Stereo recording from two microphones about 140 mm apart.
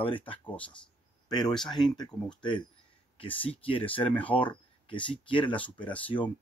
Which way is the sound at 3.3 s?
40° left (ahead or behind).